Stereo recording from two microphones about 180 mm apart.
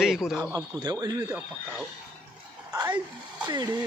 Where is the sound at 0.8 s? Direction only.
20° right (ahead or behind).